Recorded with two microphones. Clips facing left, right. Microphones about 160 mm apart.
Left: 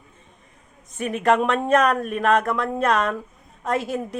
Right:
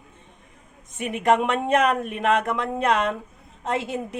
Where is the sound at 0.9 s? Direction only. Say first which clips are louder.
Left 1 dB; 15° right (ahead or behind).